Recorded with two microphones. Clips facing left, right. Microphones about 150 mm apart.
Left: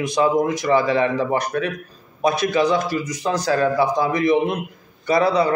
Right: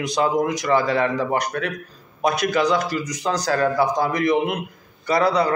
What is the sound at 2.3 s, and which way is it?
A man's voice, 20° left (ahead or behind).